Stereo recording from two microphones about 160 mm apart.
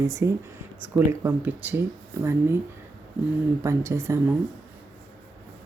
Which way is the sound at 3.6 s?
20° right (ahead or behind).